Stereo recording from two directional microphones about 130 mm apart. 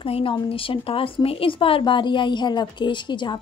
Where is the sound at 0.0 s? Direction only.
45° left (ahead or behind).